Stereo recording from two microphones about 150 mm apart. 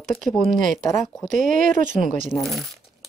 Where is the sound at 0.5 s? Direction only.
60° right (ahead or behind).